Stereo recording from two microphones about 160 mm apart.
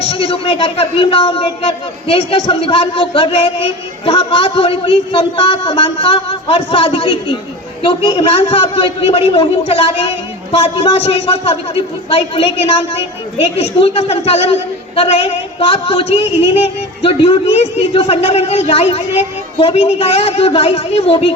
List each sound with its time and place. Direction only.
0.0 s a woman's voice: 35° left (ahead or behind)